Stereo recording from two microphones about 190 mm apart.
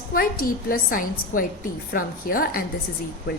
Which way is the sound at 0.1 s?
50° left (ahead or behind).